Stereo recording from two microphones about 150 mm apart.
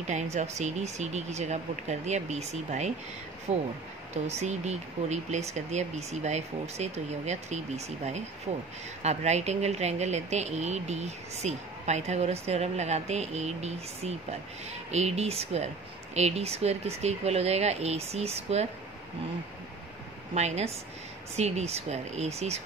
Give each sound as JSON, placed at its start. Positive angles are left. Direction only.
{"t": 0.0, "sound": "speech", "side_deg": -50}
{"t": 20.3, "sound": "speech", "side_deg": -45}